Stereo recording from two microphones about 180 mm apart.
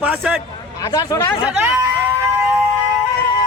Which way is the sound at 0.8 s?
20° left (ahead or behind).